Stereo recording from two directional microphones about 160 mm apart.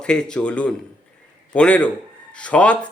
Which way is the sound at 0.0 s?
5° left (ahead or behind).